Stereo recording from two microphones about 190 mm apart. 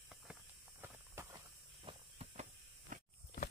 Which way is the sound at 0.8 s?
10° right (ahead or behind).